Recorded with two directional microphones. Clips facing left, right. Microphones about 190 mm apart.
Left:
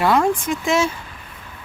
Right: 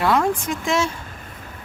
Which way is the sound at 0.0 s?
Centre (ahead or behind).